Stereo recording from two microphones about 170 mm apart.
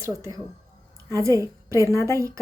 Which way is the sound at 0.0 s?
20° right (ahead or behind).